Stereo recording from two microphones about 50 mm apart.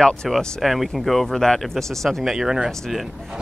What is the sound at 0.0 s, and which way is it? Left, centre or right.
Speech, centre.